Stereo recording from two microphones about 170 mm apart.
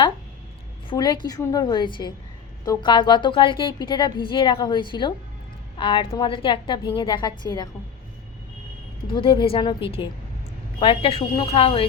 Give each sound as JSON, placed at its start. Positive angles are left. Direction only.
{"t": 0.9, "sound": "a woman's voice", "side_deg": 25}
{"t": 9.1, "sound": "a woman's voice", "side_deg": 30}